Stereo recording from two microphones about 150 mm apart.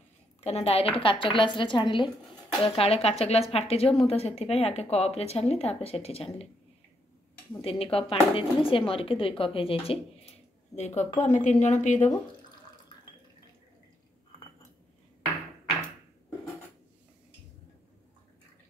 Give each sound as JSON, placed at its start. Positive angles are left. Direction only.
{"t": 0.4, "sound": "speech", "side_deg": 45}
{"t": 7.6, "sound": "a woman's voice", "side_deg": 40}